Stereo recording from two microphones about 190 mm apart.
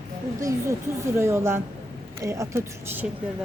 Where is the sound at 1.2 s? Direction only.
15° right (ahead or behind).